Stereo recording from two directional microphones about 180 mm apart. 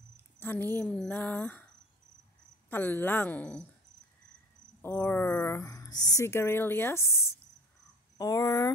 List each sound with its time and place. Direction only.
0.4 s speech: 10° left (ahead or behind)
2.7 s speech: 10° left (ahead or behind)
4.8 s speech: 10° left (ahead or behind)